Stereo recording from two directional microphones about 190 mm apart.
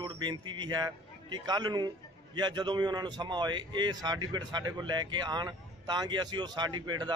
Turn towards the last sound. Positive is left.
turn(degrees=-20)  # may be behind; listen again after turning